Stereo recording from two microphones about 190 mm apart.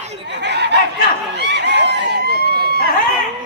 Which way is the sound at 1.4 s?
65° right (ahead or behind).